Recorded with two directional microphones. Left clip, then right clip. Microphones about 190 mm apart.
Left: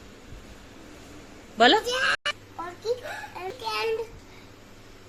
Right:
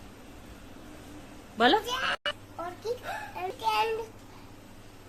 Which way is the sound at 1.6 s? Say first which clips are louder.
Left 5 dB; 10° left (ahead or behind).